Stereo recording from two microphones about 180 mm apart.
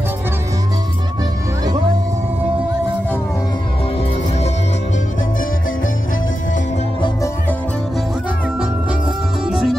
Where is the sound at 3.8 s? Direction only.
35° left (ahead or behind).